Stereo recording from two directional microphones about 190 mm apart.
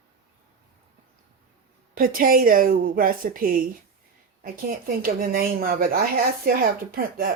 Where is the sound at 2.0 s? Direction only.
50° right (ahead or behind).